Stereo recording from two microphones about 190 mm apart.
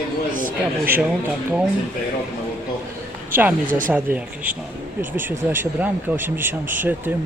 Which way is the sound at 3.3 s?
10° right (ahead or behind).